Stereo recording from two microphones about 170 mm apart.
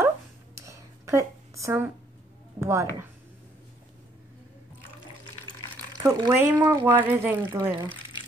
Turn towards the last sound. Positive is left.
turn(degrees=-10)  # may be behind; listen again after turning